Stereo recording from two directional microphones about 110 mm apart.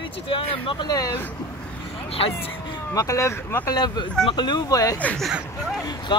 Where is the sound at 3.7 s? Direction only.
40° left (ahead or behind).